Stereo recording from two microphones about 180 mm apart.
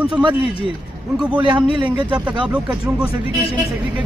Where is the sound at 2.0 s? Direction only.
5° right (ahead or behind).